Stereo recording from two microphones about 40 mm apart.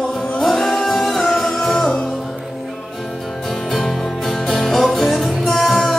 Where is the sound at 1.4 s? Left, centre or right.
Centre.